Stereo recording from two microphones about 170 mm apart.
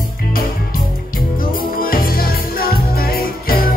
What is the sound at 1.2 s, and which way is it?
Music, 55° left (ahead or behind).